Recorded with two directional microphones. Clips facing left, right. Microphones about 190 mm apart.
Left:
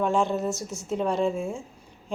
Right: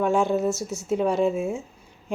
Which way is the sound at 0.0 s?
5° right (ahead or behind).